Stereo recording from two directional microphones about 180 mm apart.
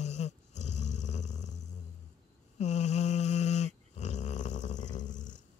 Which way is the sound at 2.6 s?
40° left (ahead or behind).